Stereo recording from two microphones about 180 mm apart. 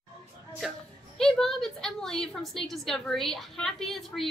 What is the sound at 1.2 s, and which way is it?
A woman's voice, centre (ahead or behind).